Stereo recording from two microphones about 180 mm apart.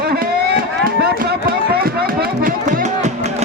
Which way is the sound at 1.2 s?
60° right (ahead or behind).